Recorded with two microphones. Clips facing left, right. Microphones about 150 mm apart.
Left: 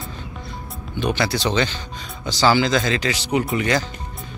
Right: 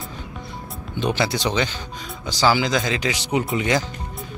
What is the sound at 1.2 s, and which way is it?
Speech, 15° right (ahead or behind).